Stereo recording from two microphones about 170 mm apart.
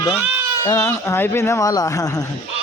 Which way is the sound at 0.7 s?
15° left (ahead or behind).